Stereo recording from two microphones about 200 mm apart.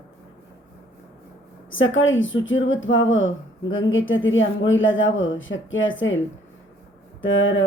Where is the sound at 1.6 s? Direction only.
75° left (ahead or behind).